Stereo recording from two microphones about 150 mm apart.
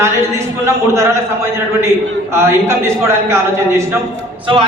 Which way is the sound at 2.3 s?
15° right (ahead or behind).